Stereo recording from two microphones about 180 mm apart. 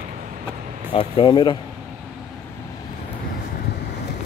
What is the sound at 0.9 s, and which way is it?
Speech, 30° left (ahead or behind).